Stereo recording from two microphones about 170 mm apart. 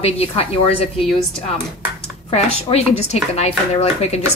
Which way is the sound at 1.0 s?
Centre (ahead or behind).